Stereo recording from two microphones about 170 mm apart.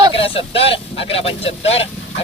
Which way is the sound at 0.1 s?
30° left (ahead or behind).